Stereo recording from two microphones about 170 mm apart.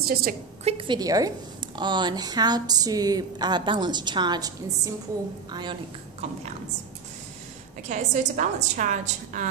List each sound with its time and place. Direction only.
0.0 s a woman's voice: 60° right (ahead or behind)
0.7 s a woman's voice: 30° right (ahead or behind)
7.9 s a woman's voice: 45° right (ahead or behind)